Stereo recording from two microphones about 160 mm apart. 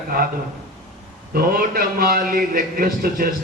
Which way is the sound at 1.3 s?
65° right (ahead or behind).